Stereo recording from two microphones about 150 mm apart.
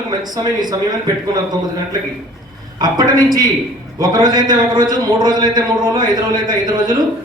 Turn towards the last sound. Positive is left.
turn(degrees=-30)  # may be behind; listen again after turning